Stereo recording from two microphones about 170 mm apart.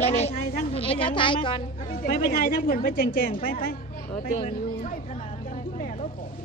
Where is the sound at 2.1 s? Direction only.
60° left (ahead or behind).